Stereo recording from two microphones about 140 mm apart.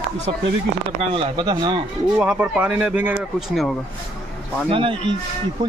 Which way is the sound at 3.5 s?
Centre (ahead or behind).